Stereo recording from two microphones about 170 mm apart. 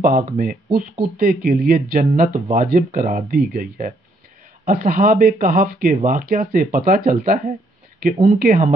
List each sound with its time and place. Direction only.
0.0 s speech: 55° right (ahead or behind)